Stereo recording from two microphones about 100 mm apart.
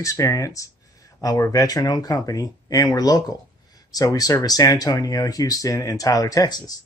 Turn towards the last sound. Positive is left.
turn(degrees=40)  # may be behind; listen again after turning